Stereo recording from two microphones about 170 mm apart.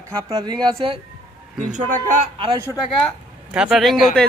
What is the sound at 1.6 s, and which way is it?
Speech, 45° right (ahead or behind).